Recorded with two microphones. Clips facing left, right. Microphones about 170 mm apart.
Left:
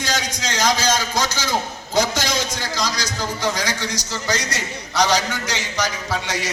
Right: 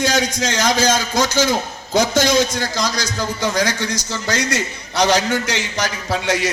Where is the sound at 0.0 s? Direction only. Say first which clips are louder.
Right 7 dB; 55° right (ahead or behind).